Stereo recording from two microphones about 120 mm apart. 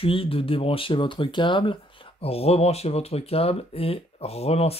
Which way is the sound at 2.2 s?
55° left (ahead or behind).